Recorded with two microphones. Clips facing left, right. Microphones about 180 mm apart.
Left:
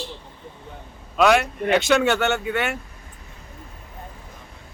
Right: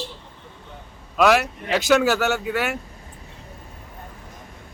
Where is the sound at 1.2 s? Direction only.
Centre (ahead or behind).